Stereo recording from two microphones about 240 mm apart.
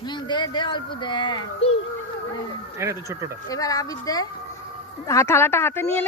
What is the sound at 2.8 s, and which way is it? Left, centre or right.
Speech, centre.